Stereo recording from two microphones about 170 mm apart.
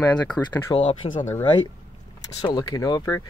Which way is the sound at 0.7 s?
40° left (ahead or behind).